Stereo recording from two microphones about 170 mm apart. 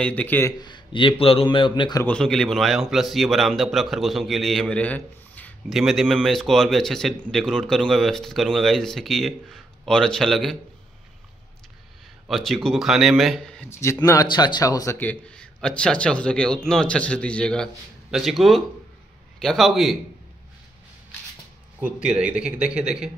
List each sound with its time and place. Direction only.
0.0 s speech: 10° left (ahead or behind)
0.6 s speech: 25° left (ahead or behind)
2.0 s a man's voice: 5° left (ahead or behind)
5.7 s a man's voice: centre (ahead or behind)
12.3 s a man's voice: centre (ahead or behind)
13.7 s a man's voice: 15° left (ahead or behind); by 20.0 s centre (ahead or behind)
21.7 s a man's voice: 10° right (ahead or behind)